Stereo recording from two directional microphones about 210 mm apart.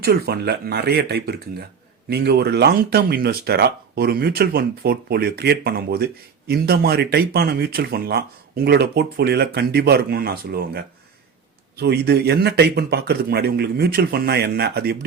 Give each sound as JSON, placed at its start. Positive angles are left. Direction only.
{"t": 0.0, "sound": "speech", "side_deg": -50}